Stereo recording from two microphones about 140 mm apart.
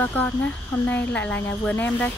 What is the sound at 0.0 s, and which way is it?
Speech, 10° left (ahead or behind).